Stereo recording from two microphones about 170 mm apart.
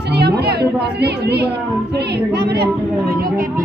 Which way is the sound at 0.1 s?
75° right (ahead or behind).